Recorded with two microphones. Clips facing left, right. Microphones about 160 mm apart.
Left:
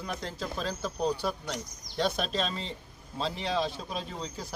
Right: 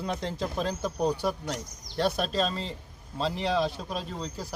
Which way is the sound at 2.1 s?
40° right (ahead or behind).